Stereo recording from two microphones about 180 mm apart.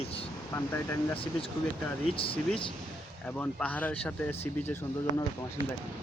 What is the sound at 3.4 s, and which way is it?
Speech, 10° left (ahead or behind).